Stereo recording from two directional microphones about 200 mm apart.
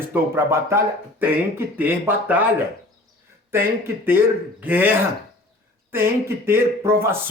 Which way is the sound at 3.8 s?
10° right (ahead or behind).